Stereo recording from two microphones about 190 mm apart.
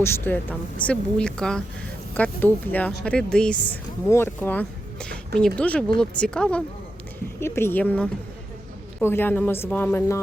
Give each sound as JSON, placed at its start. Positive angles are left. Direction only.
{"t": 0.0, "sound": "speech", "side_deg": 10}